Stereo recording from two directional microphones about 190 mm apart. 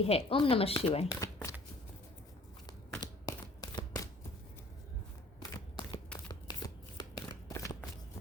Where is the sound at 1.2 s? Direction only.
15° left (ahead or behind).